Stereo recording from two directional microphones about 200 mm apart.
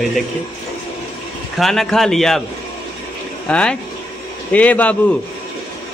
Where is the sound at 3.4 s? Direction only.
5° left (ahead or behind).